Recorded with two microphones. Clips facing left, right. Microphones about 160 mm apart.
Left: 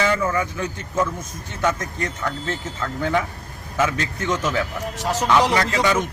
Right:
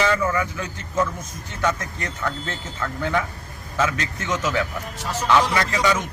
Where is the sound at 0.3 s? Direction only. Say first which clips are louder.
Left 2 dB; 20° left (ahead or behind).